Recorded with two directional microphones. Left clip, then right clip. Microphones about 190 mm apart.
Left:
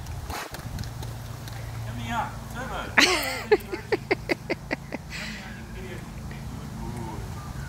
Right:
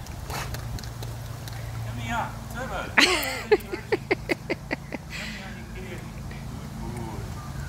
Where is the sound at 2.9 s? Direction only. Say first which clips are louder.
Even; centre (ahead or behind).